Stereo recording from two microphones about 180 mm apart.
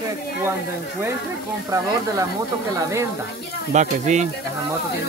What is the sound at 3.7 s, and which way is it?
Speech, 40° right (ahead or behind).